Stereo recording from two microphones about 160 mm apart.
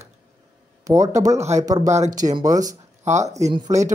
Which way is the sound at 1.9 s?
45° right (ahead or behind).